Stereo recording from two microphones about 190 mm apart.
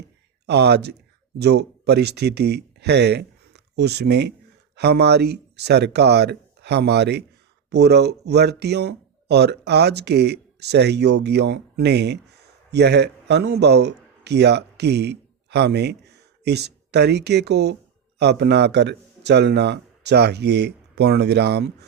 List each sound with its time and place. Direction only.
0.4 s a man's voice: 60° right (ahead or behind)